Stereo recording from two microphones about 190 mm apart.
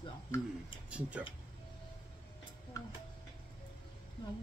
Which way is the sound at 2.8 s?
15° left (ahead or behind).